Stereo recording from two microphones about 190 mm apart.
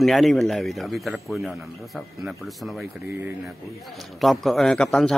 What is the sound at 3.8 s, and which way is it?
A man's voice, centre (ahead or behind).